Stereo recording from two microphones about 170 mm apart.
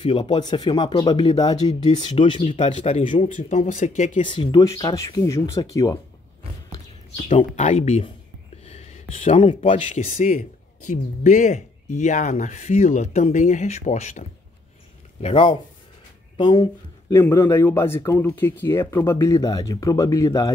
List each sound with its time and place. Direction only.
0.0 s speech: 30° left (ahead or behind)
1.7 s speech: 40° left (ahead or behind)
2.0 s speech: 30° left (ahead or behind)
3.3 s speech: 45° left (ahead or behind)
4.3 s speech: 30° left (ahead or behind)
7.2 s speech: 45° left (ahead or behind)
9.1 s speech: 40° left (ahead or behind)
15.2 s speech: 30° left (ahead or behind)
17.1 s speech: 15° left (ahead or behind)